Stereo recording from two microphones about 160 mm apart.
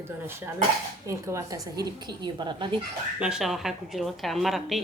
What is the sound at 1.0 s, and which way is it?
A woman's voice, 20° right (ahead or behind).